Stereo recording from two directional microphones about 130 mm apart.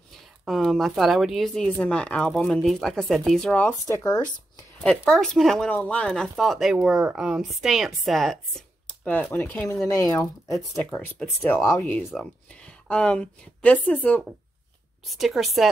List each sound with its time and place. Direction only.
0.5 s speech: centre (ahead or behind)
3.8 s speech: 25° left (ahead or behind)
4.8 s speech: 5° left (ahead or behind)
8.8 s speech: 10° left (ahead or behind)
9.8 s speech: 25° left (ahead or behind)
10.8 s speech: 15° left (ahead or behind)
15.0 s speech: centre (ahead or behind)